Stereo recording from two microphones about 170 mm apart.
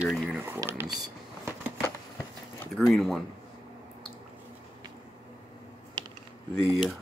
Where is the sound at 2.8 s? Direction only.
Centre (ahead or behind).